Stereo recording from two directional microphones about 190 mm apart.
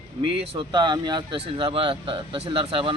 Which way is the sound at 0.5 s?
25° right (ahead or behind).